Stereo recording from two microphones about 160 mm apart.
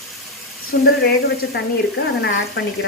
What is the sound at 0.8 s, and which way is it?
Speech, 85° left.